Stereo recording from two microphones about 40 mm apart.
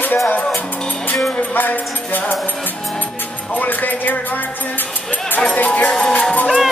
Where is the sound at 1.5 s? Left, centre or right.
Left.